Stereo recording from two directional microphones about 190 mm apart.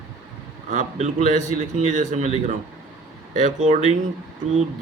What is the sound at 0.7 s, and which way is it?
Speech, 35° right (ahead or behind).